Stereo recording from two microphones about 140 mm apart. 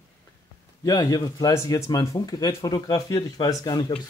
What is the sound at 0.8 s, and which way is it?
Speech, 25° left (ahead or behind).